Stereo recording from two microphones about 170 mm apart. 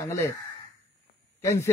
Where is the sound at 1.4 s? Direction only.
15° left (ahead or behind).